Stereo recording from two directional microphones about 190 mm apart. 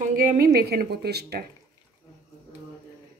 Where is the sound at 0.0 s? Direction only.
45° right (ahead or behind).